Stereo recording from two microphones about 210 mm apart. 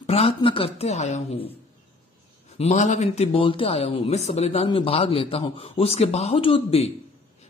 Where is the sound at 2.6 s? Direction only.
35° left (ahead or behind).